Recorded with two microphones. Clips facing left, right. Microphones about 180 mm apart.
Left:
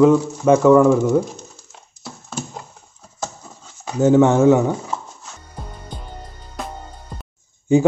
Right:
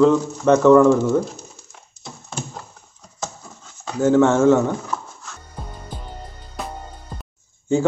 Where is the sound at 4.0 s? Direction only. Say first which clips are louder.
Left 2 dB; 15° left (ahead or behind).